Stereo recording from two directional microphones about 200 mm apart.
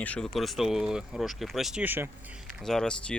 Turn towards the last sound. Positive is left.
turn(degrees=5)  # may be behind; listen again after turning